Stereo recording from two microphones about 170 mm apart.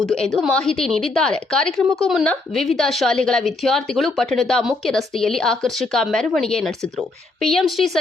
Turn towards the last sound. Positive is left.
turn(degrees=0)  # may be behind; listen again after turning